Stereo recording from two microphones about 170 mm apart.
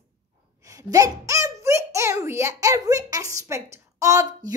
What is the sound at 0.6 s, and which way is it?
A child's voice, 20° right (ahead or behind).